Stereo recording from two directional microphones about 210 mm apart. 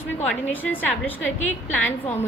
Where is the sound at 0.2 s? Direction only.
5° left (ahead or behind).